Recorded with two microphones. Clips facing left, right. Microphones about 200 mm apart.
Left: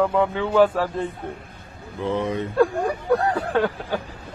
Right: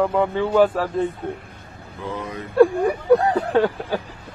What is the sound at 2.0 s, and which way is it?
Speech, 25° left (ahead or behind).